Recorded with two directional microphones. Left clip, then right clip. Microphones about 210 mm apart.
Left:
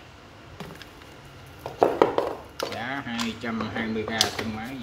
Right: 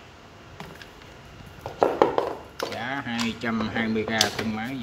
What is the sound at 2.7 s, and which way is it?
Speech, 5° right (ahead or behind).